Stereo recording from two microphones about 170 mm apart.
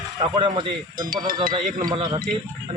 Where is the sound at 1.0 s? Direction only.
55° right (ahead or behind).